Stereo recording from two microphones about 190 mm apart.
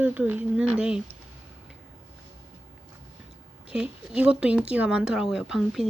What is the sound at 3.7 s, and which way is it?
Speech, 5° right (ahead or behind).